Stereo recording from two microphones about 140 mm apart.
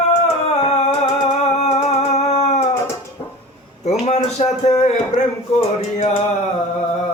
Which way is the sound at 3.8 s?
55° left (ahead or behind).